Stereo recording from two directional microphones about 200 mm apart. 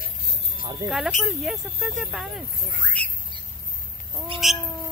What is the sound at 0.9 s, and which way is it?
Speech, centre (ahead or behind).